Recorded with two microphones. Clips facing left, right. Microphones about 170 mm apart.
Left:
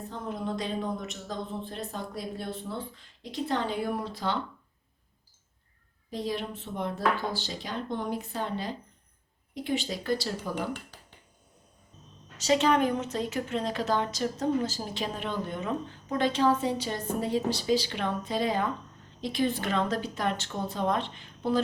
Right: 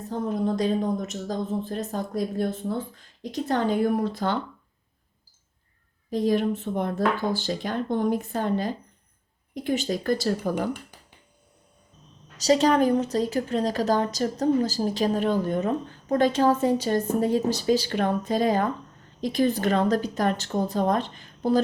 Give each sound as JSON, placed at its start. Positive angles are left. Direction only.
{"t": 0.1, "sound": "a woman's voice", "side_deg": -40}
{"t": 6.1, "sound": "speech", "side_deg": -45}
{"t": 12.4, "sound": "a woman's voice", "side_deg": -40}